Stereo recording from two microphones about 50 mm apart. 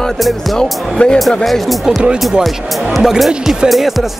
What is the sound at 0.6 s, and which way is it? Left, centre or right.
Speech, centre.